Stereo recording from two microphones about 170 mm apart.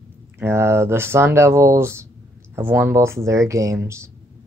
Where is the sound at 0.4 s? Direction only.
15° right (ahead or behind).